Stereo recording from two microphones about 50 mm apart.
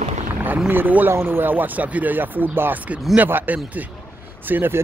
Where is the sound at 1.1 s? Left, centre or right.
Right.